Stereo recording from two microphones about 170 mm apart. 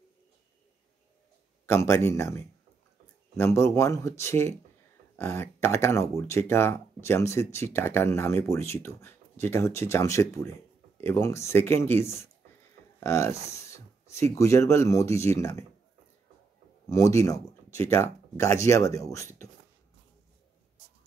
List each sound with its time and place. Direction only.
1.7 s speech: 15° left (ahead or behind)
16.9 s speech: 15° left (ahead or behind)